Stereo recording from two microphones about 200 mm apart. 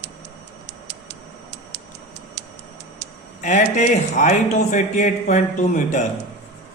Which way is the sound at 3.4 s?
35° left (ahead or behind).